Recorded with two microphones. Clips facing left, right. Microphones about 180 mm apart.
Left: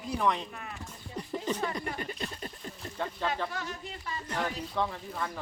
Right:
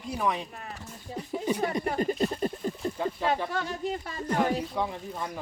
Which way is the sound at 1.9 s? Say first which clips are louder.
Right 10 dB; 40° right (ahead or behind).